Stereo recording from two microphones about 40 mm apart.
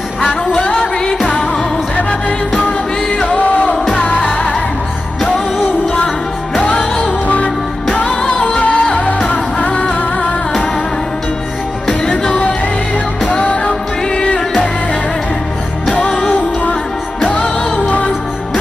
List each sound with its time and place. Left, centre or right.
0.5 s music: left
2.0 s music: left
3.7 s music: centre
7.0 s music: left
12.0 s music: left
15.9 s music: left